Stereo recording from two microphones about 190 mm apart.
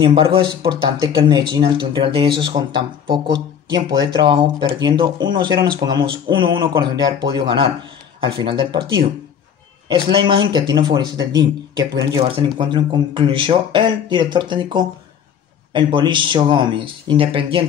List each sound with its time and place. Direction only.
0.0 s speech: 30° right (ahead or behind)